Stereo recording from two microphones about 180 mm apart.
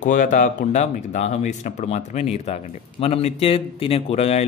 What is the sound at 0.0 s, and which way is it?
Speech, 45° left (ahead or behind).